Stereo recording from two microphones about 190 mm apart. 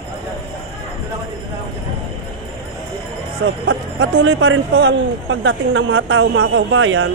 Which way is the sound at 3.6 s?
85° right.